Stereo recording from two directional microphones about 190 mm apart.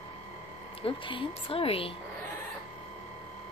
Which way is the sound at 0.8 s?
25° left (ahead or behind).